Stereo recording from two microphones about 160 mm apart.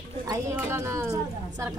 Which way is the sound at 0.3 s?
20° right (ahead or behind).